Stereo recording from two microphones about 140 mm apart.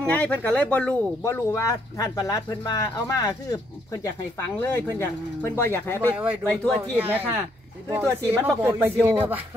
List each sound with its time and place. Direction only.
0.0 s speech: 10° left (ahead or behind)
1.2 s speech: 20° left (ahead or behind)
7.0 s speech: 15° right (ahead or behind)